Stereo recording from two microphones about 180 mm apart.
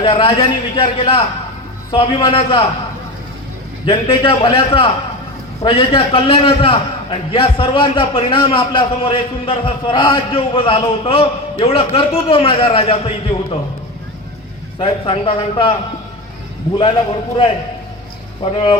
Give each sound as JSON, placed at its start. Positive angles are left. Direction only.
{"t": 0.0, "sound": "a man's voice", "side_deg": 30}
{"t": 3.8, "sound": "a man's voice", "side_deg": 30}
{"t": 14.8, "sound": "a man's voice", "side_deg": 30}
{"t": 16.7, "sound": "a man's voice", "side_deg": 30}
{"t": 18.5, "sound": "a man's voice", "side_deg": 25}